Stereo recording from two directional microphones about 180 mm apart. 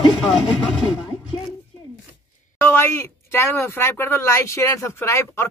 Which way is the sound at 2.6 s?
15° left (ahead or behind).